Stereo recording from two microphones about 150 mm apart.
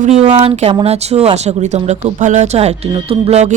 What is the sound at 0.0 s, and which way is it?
Speech, 50° right (ahead or behind).